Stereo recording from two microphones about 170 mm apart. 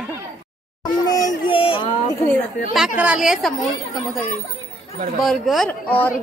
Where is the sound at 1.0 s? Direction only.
20° left (ahead or behind).